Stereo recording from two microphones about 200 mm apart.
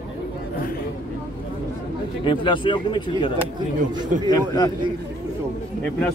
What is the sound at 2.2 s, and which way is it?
A man's voice, 25° left (ahead or behind).